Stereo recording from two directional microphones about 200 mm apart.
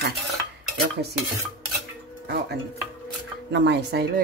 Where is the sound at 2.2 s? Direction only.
55° right (ahead or behind).